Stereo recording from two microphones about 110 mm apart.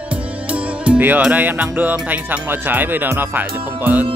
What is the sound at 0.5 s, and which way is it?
Music, 10° right (ahead or behind).